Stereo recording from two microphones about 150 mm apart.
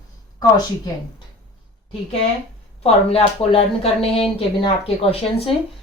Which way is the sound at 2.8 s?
40° left (ahead or behind).